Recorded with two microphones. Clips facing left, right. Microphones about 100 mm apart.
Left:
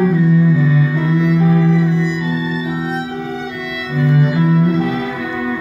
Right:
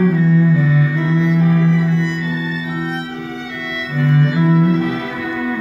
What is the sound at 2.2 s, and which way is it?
Music, 15° left (ahead or behind).